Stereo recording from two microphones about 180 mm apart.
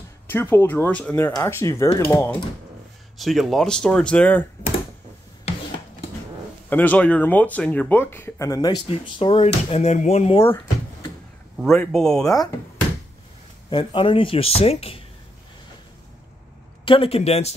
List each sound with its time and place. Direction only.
0.3 s speech: 10° left (ahead or behind)
3.2 s speech: centre (ahead or behind)
5.5 s rub: 35° left (ahead or behind)
6.7 s speech: 10° left (ahead or behind); by 10.3 s 35° left (ahead or behind)
10.3 s drawer open or close: 20° left (ahead or behind)
11.7 s speech: 5° left (ahead or behind)
13.7 s speech: 30° left (ahead or behind)
16.8 s speech: 30° left (ahead or behind)